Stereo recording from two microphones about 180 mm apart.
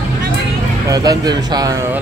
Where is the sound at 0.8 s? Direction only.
20° right (ahead or behind).